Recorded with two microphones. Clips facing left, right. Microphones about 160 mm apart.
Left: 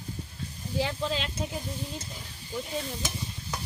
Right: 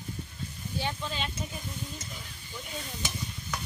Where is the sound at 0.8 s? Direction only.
90° left.